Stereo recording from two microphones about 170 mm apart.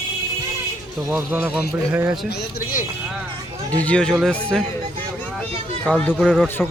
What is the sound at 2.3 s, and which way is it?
Speech, 70° left (ahead or behind).